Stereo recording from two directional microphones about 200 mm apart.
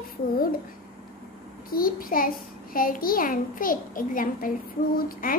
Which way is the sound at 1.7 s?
45° left (ahead or behind).